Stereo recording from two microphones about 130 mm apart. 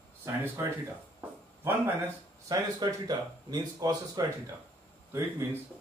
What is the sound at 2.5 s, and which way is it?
Speech, 30° right (ahead or behind).